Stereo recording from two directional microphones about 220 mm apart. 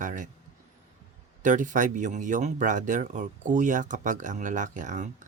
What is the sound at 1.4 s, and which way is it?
Speech, 35° right (ahead or behind).